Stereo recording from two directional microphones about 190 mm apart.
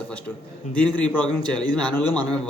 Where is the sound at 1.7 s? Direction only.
5° left (ahead or behind).